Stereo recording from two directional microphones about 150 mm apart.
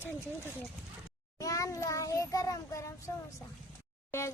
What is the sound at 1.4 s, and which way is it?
Speech, 20° left (ahead or behind).